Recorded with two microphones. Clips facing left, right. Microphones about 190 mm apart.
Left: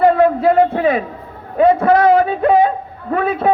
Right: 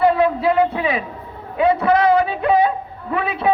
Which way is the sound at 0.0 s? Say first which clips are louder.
Left 4 dB; 45° left (ahead or behind).